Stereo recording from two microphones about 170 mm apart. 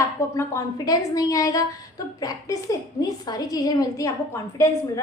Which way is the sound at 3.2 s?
20° left (ahead or behind).